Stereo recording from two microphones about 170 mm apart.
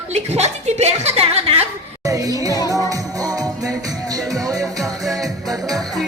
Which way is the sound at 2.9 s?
20° right (ahead or behind).